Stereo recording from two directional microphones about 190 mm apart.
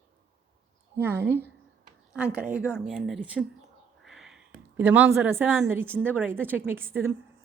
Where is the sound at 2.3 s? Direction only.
5° right (ahead or behind).